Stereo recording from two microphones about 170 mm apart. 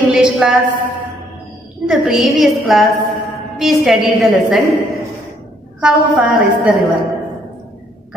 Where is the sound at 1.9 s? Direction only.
5° right (ahead or behind).